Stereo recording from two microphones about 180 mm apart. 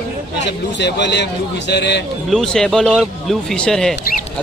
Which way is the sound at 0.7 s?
75° left (ahead or behind).